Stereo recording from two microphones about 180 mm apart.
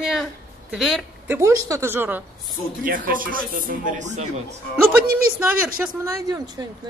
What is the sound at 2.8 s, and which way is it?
A woman's voice, 50° right (ahead or behind).